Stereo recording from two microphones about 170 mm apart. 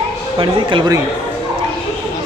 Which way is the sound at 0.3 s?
30° right (ahead or behind).